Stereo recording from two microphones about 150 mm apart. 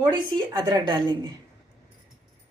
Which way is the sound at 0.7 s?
30° right (ahead or behind).